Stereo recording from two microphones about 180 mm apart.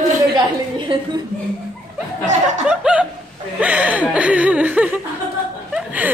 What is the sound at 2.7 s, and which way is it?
Laughter, 5° right (ahead or behind).